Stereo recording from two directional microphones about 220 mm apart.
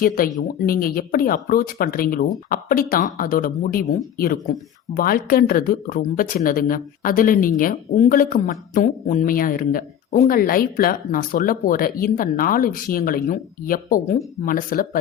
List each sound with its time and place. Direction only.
0.6 s speech: 40° left (ahead or behind)